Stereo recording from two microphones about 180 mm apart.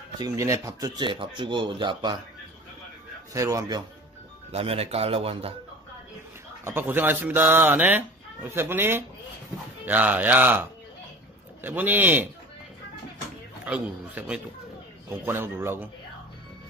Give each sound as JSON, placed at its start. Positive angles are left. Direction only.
{"t": 0.2, "sound": "speech", "side_deg": -20}
{"t": 3.3, "sound": "speech", "side_deg": -20}
{"t": 4.5, "sound": "speech", "side_deg": -35}
{"t": 6.6, "sound": "speech", "side_deg": -10}
{"t": 13.7, "sound": "speech", "side_deg": -5}